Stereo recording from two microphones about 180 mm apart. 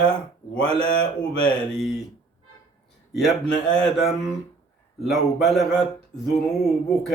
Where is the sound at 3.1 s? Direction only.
Centre (ahead or behind).